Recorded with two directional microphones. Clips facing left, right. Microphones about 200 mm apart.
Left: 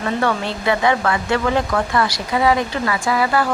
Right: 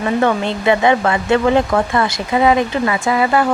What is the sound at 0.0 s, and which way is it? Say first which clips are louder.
Speech: right 4 dB; 20° right (ahead or behind).